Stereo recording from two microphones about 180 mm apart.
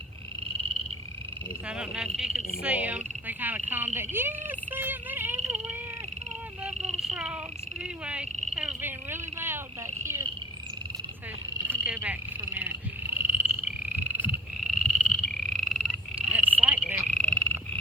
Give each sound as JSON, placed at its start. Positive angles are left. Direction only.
{"t": 1.6, "sound": "speech", "side_deg": -5}
{"t": 6.7, "sound": "frog", "side_deg": -40}
{"t": 7.0, "sound": "frog", "side_deg": -5}
{"t": 8.0, "sound": "speech", "side_deg": -5}
{"t": 11.7, "sound": "speech", "side_deg": -15}
{"t": 13.1, "sound": "frog", "side_deg": -10}
{"t": 17.2, "sound": "frog", "side_deg": 5}